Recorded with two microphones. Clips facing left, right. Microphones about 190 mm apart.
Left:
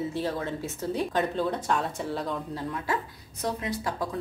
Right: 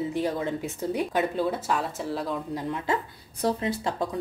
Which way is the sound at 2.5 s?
20° right (ahead or behind).